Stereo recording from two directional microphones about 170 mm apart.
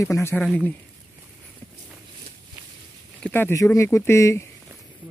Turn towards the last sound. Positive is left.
turn(degrees=15)  # may be behind; listen again after turning